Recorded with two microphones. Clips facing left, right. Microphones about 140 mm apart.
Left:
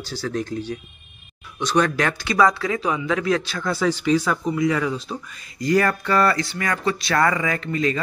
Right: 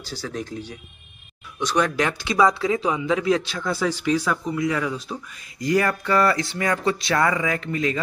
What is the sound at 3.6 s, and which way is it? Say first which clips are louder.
Speech: left 4 dB; 5° right (ahead or behind).